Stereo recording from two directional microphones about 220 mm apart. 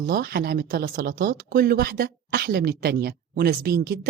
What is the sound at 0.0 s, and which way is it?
Speech, 45° right (ahead or behind).